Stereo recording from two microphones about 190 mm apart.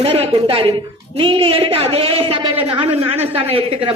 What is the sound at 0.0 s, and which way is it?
A woman's voice, 30° right (ahead or behind).